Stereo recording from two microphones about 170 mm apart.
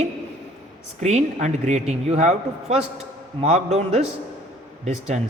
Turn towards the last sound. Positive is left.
turn(degrees=-45)  # may be behind; listen again after turning